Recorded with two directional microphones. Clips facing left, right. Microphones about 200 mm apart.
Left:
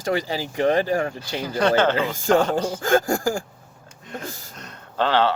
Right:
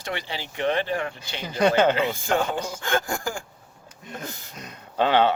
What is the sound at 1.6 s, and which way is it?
Speech, 10° right (ahead or behind).